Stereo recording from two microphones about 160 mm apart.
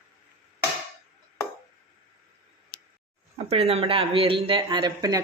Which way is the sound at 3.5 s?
40° right (ahead or behind).